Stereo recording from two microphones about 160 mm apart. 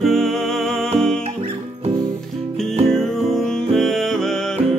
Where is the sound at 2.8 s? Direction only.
Centre (ahead or behind).